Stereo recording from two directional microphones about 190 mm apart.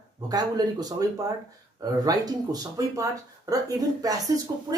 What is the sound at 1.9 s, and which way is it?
Speech, 20° right (ahead or behind).